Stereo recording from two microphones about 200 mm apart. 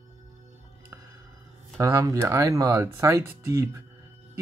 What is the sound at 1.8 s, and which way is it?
Speech, 15° right (ahead or behind).